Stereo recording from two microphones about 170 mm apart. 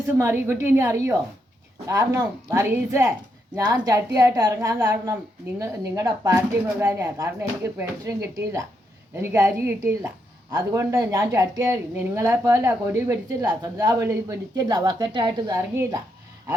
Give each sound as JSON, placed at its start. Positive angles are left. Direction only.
{"t": 0.1, "sound": "a woman's voice", "side_deg": -15}